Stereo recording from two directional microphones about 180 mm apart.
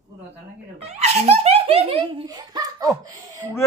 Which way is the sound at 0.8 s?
35° right (ahead or behind).